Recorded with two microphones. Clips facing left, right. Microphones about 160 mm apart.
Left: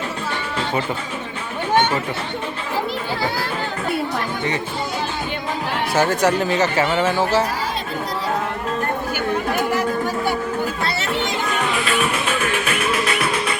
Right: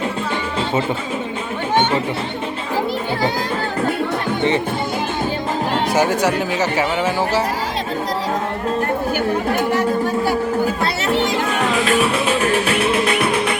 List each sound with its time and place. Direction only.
5.9 s speech: 15° right (ahead or behind)
11.7 s music: 40° right (ahead or behind)
13.2 s music: 60° right (ahead or behind)